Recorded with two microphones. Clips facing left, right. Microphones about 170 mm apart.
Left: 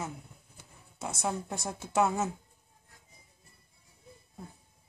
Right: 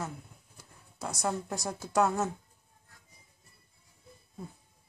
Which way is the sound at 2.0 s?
5° left (ahead or behind).